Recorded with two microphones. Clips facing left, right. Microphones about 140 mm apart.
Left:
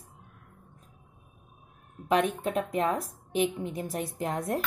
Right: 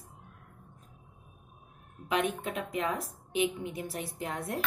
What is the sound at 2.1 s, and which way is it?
A woman's voice, 40° left (ahead or behind).